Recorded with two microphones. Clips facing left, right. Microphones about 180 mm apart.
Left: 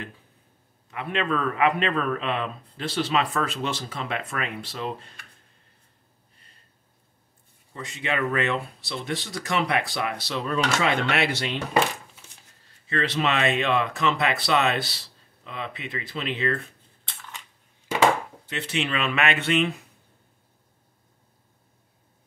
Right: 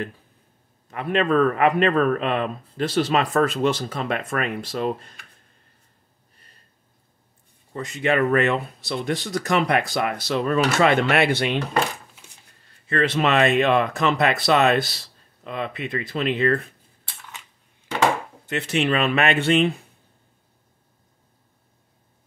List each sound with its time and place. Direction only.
0.8 s a man's voice: 45° right (ahead or behind)
7.7 s a man's voice: 45° right (ahead or behind)
12.8 s a man's voice: 50° right (ahead or behind)
18.5 s speech: 45° right (ahead or behind)